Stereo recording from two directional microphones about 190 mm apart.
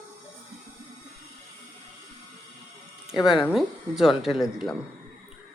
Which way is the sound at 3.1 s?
Centre (ahead or behind).